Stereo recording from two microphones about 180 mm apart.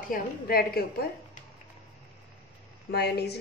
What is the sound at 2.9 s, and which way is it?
Speech, 65° left (ahead or behind).